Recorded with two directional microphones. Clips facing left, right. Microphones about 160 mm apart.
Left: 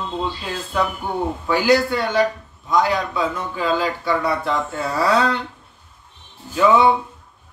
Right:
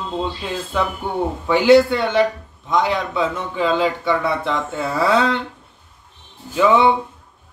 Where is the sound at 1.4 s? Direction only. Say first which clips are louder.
Right 6 dB; 25° right (ahead or behind).